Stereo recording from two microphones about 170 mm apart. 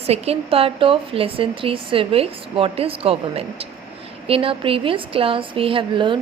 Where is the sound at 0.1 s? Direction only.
35° right (ahead or behind).